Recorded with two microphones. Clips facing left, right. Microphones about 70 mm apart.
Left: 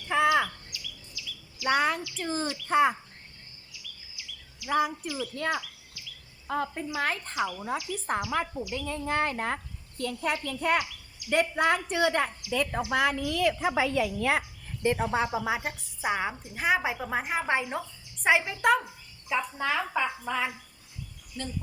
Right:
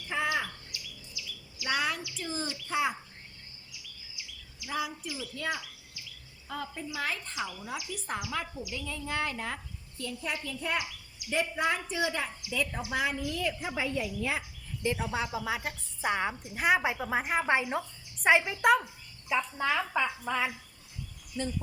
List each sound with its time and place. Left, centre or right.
0.1 s bird: left
0.7 s chirp: right
1.6 s a child's voice: left
4.6 s a child's voice: left
8.0 s speech: left
8.7 s speech: left
10.0 s a woman's voice: left
14.8 s speech: left
16.0 s a woman's voice: centre